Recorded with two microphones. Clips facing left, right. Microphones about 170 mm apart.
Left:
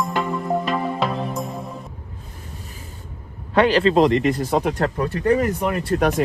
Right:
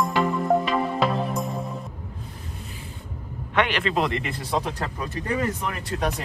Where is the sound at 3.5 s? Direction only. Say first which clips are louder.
Left 8 dB; 35° left (ahead or behind).